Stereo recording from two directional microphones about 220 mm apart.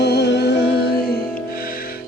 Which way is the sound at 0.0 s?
50° left (ahead or behind).